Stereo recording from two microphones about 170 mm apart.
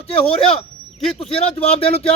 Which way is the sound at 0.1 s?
35° left (ahead or behind).